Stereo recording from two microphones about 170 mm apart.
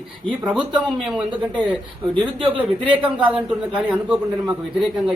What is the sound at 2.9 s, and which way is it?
A man's voice, 10° right (ahead or behind).